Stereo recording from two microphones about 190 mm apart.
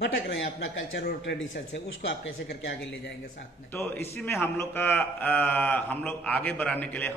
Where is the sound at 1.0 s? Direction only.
55° left (ahead or behind).